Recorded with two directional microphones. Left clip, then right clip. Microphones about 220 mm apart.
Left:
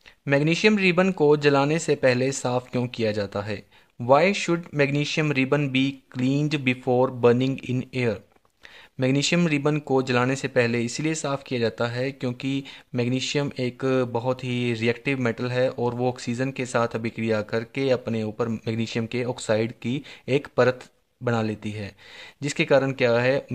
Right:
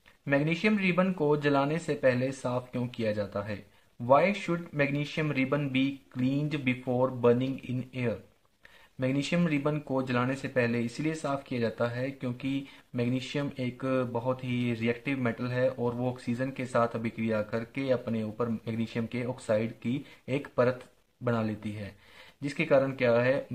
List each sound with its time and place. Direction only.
0.2 s speech: 40° left (ahead or behind)